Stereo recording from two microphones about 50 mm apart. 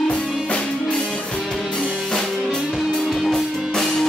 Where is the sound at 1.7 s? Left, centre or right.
Centre.